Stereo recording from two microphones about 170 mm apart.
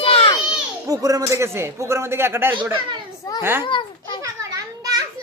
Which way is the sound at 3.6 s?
30° left (ahead or behind).